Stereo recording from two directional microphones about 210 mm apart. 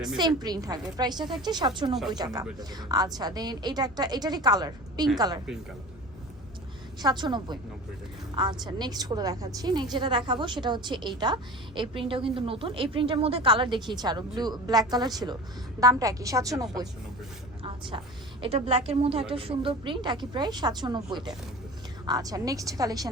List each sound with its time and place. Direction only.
0.2 s a woman's voice: 20° right (ahead or behind)
7.0 s a woman's voice: 20° right (ahead or behind)
17.6 s a sound: 25° right (ahead or behind)
18.4 s a woman's voice: 25° right (ahead or behind)